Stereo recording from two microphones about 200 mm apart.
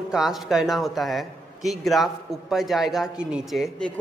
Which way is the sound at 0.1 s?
Centre (ahead or behind).